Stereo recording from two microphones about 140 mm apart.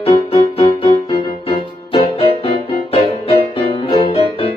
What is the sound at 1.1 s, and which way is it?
Music, 35° left (ahead or behind).